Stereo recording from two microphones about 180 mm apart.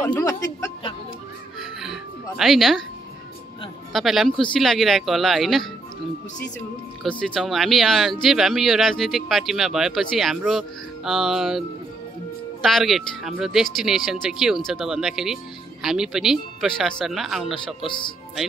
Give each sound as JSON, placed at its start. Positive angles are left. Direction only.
{"t": 0.0, "sound": "a sound", "side_deg": 15}
{"t": 1.6, "sound": "music", "side_deg": 0}
{"t": 2.3, "sound": "speech", "side_deg": 0}
{"t": 3.9, "sound": "speech", "side_deg": 0}
{"t": 7.0, "sound": "speech", "side_deg": 0}
{"t": 12.6, "sound": "speech", "side_deg": 0}
{"t": 17.8, "sound": "speech", "side_deg": 25}